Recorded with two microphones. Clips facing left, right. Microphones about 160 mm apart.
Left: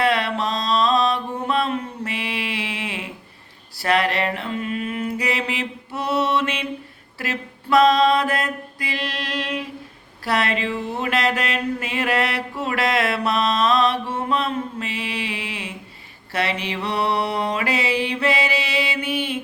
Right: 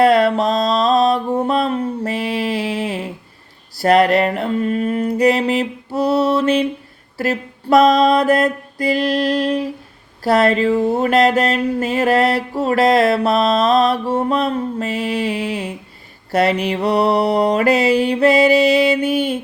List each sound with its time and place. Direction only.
0.0 s mantra: 40° right (ahead or behind)
3.8 s a sound: 40° right (ahead or behind)
16.3 s mantra: 40° right (ahead or behind)